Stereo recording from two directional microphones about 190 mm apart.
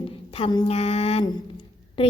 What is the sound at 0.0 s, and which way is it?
A woman's voice, 30° left (ahead or behind).